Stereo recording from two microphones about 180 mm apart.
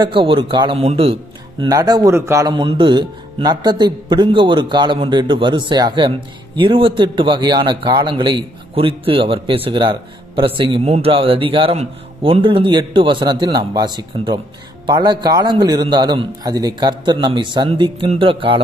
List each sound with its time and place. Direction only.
0.0 s speech: 30° right (ahead or behind)
1.6 s speech: 20° right (ahead or behind)